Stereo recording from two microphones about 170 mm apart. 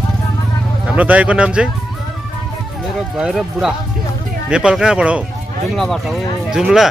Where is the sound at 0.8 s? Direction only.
10° right (ahead or behind).